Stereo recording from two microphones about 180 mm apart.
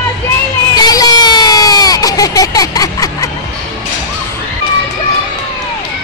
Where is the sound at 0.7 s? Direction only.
20° left (ahead or behind).